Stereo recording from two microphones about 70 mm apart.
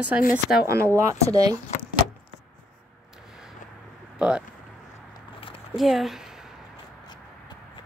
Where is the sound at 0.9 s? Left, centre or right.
Right.